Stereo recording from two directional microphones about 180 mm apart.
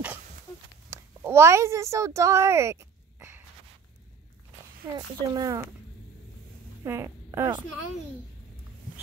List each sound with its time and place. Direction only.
0.8 s a sound: 15° right (ahead or behind)
4.9 s speech: 20° right (ahead or behind)
6.8 s a woman's voice: 15° right (ahead or behind)